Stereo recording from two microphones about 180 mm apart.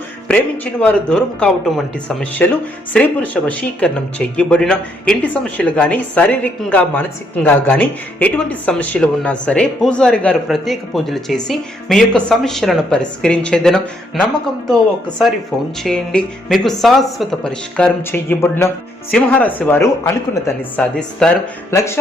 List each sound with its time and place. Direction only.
0.3 s speech: 10° left (ahead or behind)
15.8 s speech: 5° left (ahead or behind)